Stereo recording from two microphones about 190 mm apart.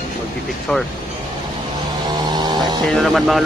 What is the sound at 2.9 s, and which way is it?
Speech, centre (ahead or behind).